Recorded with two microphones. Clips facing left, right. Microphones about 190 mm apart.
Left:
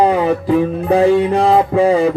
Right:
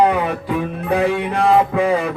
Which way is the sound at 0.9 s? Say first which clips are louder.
Left 6 dB; 30° left (ahead or behind).